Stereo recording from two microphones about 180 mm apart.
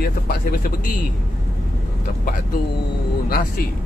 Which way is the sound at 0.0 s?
60° left (ahead or behind).